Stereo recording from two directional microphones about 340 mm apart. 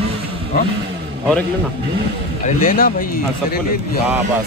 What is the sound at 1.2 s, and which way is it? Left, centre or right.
Speech, centre.